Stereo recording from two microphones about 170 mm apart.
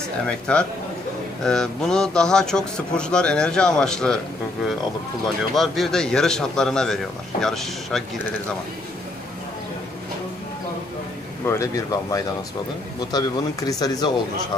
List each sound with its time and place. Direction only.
0.3 s a man's voice: 5° left (ahead or behind)
5.5 s a man's voice: centre (ahead or behind)
11.4 s speech: 15° left (ahead or behind)